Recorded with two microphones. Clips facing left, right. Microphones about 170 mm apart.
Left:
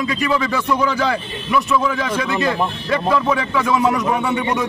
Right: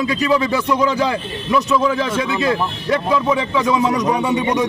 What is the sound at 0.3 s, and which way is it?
Speech, 20° right (ahead or behind).